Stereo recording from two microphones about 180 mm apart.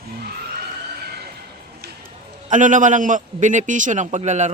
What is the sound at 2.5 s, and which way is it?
A man's voice, 45° right (ahead or behind).